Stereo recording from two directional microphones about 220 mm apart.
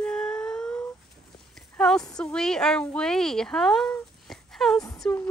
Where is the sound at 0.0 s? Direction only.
5° left (ahead or behind).